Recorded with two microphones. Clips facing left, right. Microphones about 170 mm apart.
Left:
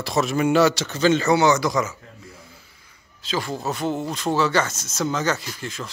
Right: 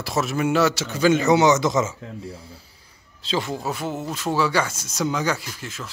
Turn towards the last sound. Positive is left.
turn(degrees=-5)  # may be behind; listen again after turning